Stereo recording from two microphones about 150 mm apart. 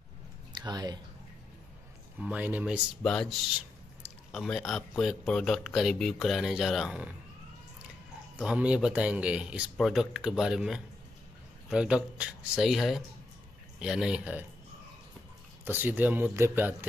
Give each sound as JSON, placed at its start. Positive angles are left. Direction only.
{"t": 0.5, "sound": "speech", "side_deg": -30}
{"t": 2.1, "sound": "speech", "side_deg": -10}
{"t": 3.0, "sound": "speech", "side_deg": 5}
{"t": 8.5, "sound": "speech", "side_deg": -5}
{"t": 15.6, "sound": "speech", "side_deg": -15}